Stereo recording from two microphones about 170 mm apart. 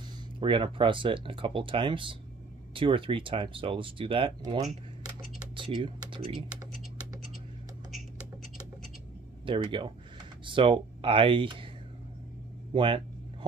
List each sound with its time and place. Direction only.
0.4 s speech: 30° right (ahead or behind)
9.5 s speech: 30° right (ahead or behind)
12.7 s a sound: 30° right (ahead or behind)